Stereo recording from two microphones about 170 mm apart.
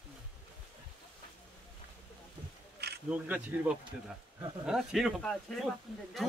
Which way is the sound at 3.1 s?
10° right (ahead or behind).